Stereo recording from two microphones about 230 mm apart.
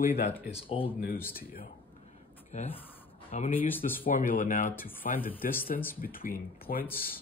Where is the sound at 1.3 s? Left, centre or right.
Left.